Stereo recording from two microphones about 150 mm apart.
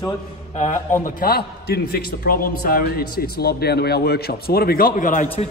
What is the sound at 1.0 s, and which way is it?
A man's voice, 85° left.